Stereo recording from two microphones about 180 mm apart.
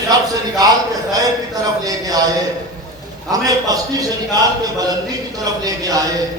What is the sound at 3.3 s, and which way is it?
A man's voice, 20° right (ahead or behind).